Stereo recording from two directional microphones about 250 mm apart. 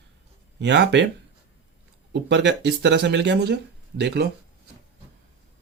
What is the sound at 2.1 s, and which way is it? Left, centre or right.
Speech, right.